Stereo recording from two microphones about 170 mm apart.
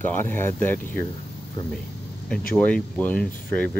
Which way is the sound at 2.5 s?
5° left (ahead or behind).